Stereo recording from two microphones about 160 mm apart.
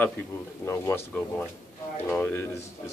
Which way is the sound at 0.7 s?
15° left (ahead or behind).